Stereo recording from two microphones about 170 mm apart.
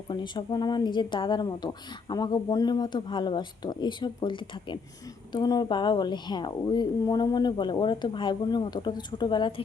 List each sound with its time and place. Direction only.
0.1 s speech: 25° left (ahead or behind)